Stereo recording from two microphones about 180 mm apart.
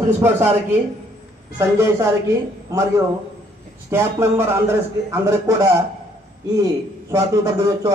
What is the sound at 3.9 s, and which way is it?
A man's voice, 15° right (ahead or behind).